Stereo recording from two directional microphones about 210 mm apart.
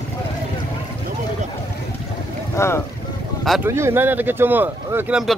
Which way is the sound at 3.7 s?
10° right (ahead or behind).